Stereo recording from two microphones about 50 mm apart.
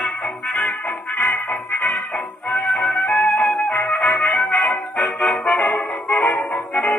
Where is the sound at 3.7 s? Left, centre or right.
Left.